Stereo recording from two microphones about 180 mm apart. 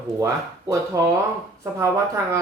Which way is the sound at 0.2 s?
15° right (ahead or behind).